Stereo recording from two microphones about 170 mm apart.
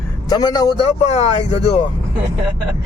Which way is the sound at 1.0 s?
40° left (ahead or behind).